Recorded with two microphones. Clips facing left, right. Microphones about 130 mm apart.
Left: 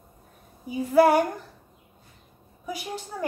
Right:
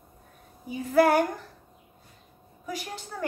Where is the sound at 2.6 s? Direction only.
10° left (ahead or behind).